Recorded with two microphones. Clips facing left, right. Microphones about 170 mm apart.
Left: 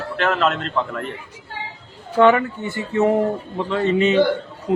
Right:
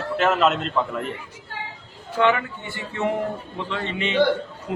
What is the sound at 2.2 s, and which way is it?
A man's voice, 45° left (ahead or behind).